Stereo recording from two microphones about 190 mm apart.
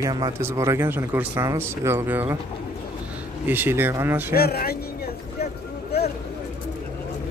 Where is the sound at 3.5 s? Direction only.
10° right (ahead or behind).